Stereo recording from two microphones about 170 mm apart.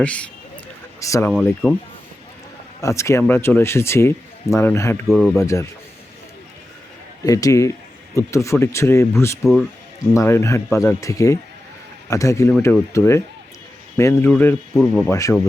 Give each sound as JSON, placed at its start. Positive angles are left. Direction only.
{"t": 0.0, "sound": "speech", "side_deg": 5}
{"t": 0.9, "sound": "speech", "side_deg": 20}
{"t": 1.3, "sound": "speech", "side_deg": -5}
{"t": 2.8, "sound": "speech", "side_deg": 15}
{"t": 5.0, "sound": "speech", "side_deg": 0}
{"t": 5.4, "sound": "a man's voice", "side_deg": 20}
{"t": 7.3, "sound": "a man's voice", "side_deg": 20}
{"t": 9.4, "sound": "speech", "side_deg": 0}
{"t": 10.2, "sound": "speech", "side_deg": 15}
{"t": 15.1, "sound": "speech", "side_deg": 15}